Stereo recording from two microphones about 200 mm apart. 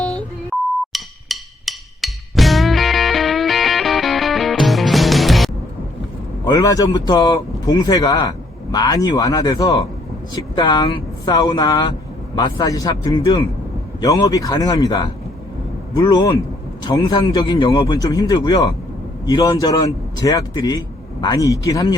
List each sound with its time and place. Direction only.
0.0 s beep: 5° left (ahead or behind)
0.9 s music: centre (ahead or behind)
6.4 s a man's voice: 20° left (ahead or behind)